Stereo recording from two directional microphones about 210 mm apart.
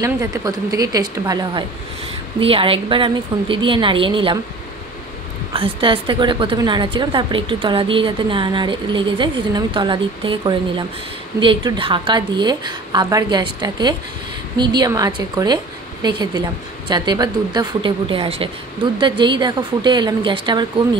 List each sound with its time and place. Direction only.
0.0 s a woman's voice: 15° right (ahead or behind)
5.5 s a woman's voice: 25° right (ahead or behind)